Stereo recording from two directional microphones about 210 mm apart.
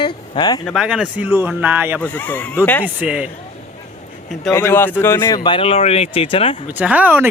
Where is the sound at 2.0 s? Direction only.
10° left (ahead or behind).